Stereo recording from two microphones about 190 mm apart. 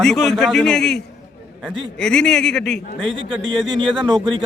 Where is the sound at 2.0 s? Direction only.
5° left (ahead or behind).